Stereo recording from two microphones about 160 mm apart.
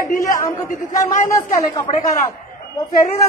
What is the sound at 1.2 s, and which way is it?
Speech, 20° left (ahead or behind).